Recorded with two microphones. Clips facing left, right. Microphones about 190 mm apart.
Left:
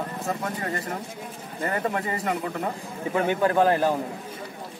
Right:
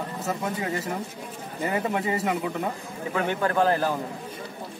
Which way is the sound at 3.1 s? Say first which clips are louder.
Left 3 dB; 15° left (ahead or behind).